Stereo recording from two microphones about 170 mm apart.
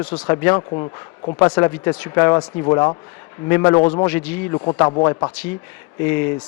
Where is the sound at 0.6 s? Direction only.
30° left (ahead or behind).